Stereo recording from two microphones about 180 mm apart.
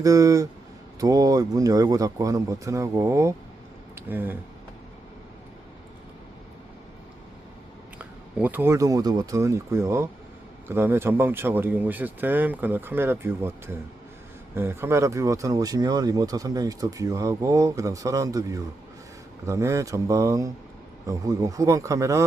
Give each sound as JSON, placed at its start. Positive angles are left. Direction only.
{"t": 0.0, "sound": "a man's voice", "side_deg": -20}
{"t": 7.9, "sound": "speech", "side_deg": -10}